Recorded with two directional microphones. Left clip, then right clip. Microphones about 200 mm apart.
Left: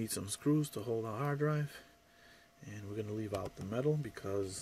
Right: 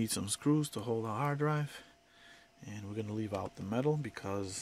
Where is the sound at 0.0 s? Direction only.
50° right (ahead or behind).